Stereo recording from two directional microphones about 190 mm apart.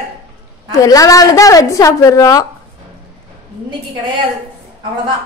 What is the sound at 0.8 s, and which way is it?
A woman's voice, 20° left (ahead or behind).